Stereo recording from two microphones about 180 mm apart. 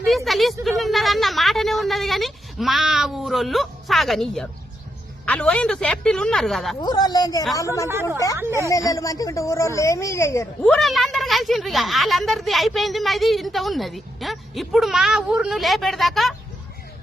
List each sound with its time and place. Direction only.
0.3 s a woman's voice: centre (ahead or behind)
6.8 s a woman's voice: 20° left (ahead or behind)
8.4 s a woman's voice: 15° right (ahead or behind)
8.7 s a woman's voice: 20° left (ahead or behind)
10.6 s speech: centre (ahead or behind)